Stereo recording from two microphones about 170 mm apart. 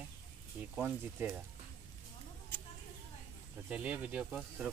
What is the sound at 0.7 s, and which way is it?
Speech, 5° right (ahead or behind).